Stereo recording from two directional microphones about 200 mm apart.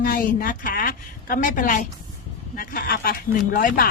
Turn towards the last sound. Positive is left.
turn(degrees=45)  # may be behind; listen again after turning